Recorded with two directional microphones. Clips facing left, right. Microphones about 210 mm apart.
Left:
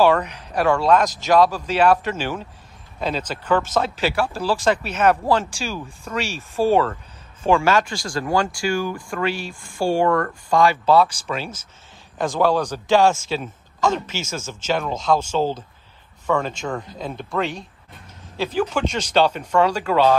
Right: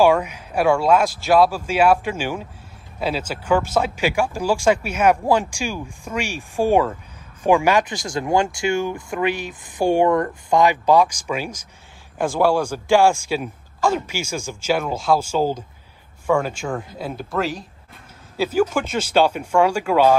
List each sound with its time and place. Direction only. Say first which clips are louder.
0.0 s speech: right 1 dB; 10° right (ahead or behind)